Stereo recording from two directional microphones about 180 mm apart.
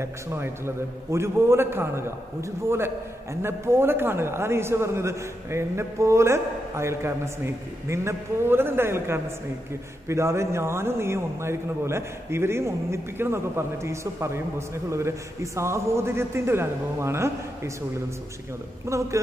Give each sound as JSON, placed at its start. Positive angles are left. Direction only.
{"t": 0.0, "sound": "a man's voice", "side_deg": -15}
{"t": 3.4, "sound": "a man's voice", "side_deg": -15}
{"t": 18.9, "sound": "a man's voice", "side_deg": -15}